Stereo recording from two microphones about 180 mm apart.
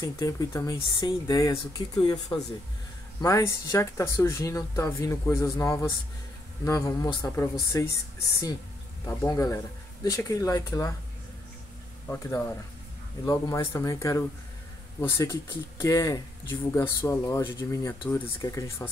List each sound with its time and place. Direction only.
0.0 s speech: 20° left (ahead or behind)
3.2 s speech: 20° left (ahead or behind)
12.1 s speech: 20° left (ahead or behind)